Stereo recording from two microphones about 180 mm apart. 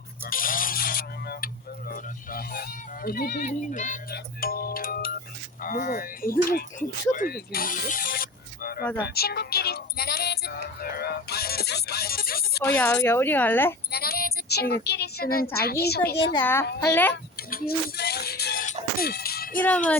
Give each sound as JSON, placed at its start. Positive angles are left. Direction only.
{"t": 0.3, "sound": "a sound", "side_deg": 50}
{"t": 1.9, "sound": "speech", "side_deg": 55}
{"t": 12.6, "sound": "a woman's voice", "side_deg": 10}
{"t": 13.9, "sound": "speech", "side_deg": 60}
{"t": 16.4, "sound": "a woman's voice", "side_deg": 10}
{"t": 17.5, "sound": "music", "side_deg": 55}
{"t": 18.6, "sound": "music", "side_deg": 50}